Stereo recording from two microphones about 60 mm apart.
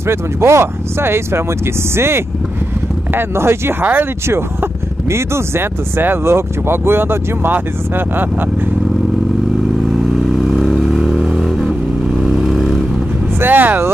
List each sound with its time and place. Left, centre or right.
0.0 s speech: right
9.8 s vehicle: centre
13.4 s vehicle: right